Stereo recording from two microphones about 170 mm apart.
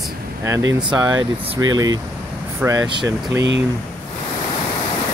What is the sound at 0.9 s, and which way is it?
Speech, 20° right (ahead or behind).